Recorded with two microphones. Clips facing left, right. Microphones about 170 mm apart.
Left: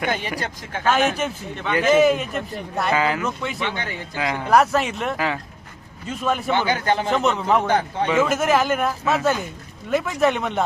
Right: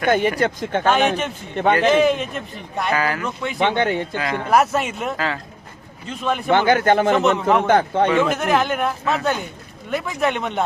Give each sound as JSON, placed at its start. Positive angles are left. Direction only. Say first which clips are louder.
{"t": 0.1, "sound": "speech", "louder": "right 8 dB", "side_deg": -50}
{"t": 0.9, "sound": "speech", "louder": "right 1 dB", "side_deg": 0}
{"t": 1.5, "sound": "speech", "louder": "right 7 dB", "side_deg": -55}
{"t": 1.9, "sound": "speech", "louder": "even", "side_deg": 5}
{"t": 2.9, "sound": "speech", "louder": "left 1 dB", "side_deg": 20}
{"t": 3.2, "sound": "speech", "louder": "even", "side_deg": 0}
{"t": 3.6, "sound": "speech", "louder": "right 9 dB", "side_deg": -60}
{"t": 4.4, "sound": "speech", "louder": "left 1 dB", "side_deg": 0}
{"t": 5.1, "sound": "speech", "louder": "left 1 dB", "side_deg": 15}
{"t": 6.1, "sound": "speech", "louder": "even", "side_deg": 0}
{"t": 6.5, "sound": "speech", "louder": "right 8 dB", "side_deg": -50}
{"t": 7.1, "sound": "speech", "louder": "right 3 dB", "side_deg": 0}
{"t": 7.7, "sound": "speech", "louder": "right 5 dB", "side_deg": -55}
{"t": 8.1, "sound": "speech", "louder": "left 4 dB", "side_deg": 5}